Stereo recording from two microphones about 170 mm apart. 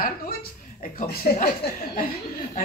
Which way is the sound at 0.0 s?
60° left (ahead or behind).